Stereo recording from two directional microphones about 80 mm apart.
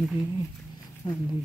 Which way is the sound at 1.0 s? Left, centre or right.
Left.